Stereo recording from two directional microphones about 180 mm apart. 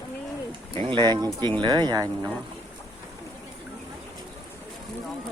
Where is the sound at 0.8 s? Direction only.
25° right (ahead or behind).